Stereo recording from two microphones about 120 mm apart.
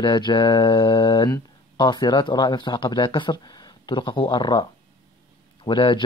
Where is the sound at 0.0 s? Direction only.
40° left (ahead or behind).